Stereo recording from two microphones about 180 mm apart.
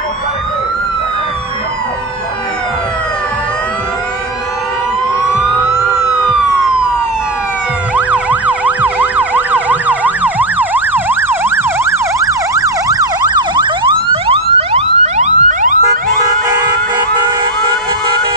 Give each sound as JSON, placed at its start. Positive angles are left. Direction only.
{"t": 5.7, "sound": "emergency vehicle", "side_deg": -5}
{"t": 7.9, "sound": "emergency vehicle", "side_deg": -5}
{"t": 16.3, "sound": "emergency vehicle", "side_deg": -20}